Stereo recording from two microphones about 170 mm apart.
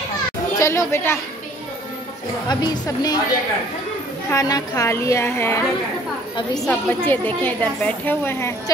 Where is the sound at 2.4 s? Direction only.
25° left (ahead or behind).